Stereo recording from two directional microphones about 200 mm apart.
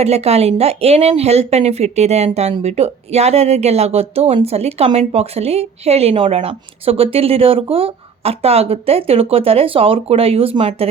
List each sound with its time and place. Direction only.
0.0 s speech: 30° right (ahead or behind)